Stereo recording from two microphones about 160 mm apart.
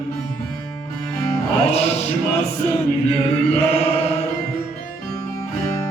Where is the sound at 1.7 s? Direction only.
40° left (ahead or behind).